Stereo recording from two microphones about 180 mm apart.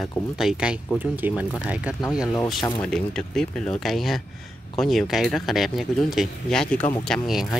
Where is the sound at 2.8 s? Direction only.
5° left (ahead or behind).